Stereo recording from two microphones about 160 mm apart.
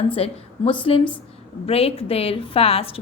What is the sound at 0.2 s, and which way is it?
A woman's voice, 35° left (ahead or behind).